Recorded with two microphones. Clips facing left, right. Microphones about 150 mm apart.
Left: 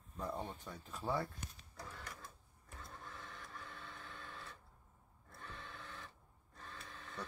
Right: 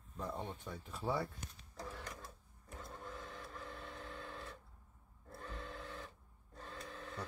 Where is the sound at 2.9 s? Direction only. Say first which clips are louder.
Right 4 dB; 25° right (ahead or behind).